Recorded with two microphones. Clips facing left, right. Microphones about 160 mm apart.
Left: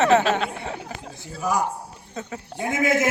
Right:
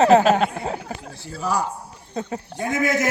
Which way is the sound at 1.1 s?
15° left (ahead or behind).